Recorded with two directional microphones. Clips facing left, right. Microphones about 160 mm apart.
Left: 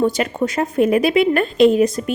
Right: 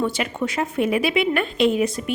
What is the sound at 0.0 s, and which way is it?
A woman's voice, 40° left (ahead or behind).